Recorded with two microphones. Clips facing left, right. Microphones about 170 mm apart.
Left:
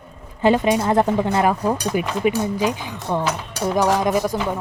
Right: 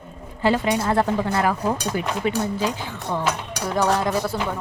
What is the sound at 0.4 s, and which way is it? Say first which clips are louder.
A woman's voice: left 4 dB; 20° left (ahead or behind).